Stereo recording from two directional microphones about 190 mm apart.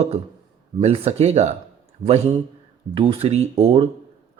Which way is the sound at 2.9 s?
30° right (ahead or behind).